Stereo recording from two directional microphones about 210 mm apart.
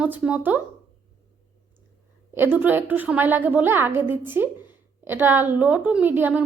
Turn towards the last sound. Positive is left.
turn(degrees=-10)  # may be behind; listen again after turning